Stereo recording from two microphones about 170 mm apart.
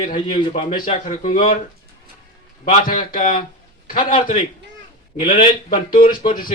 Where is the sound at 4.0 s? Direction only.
30° left (ahead or behind).